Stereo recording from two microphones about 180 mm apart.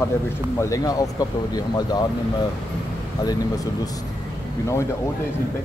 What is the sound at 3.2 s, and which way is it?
Speech, 20° left (ahead or behind).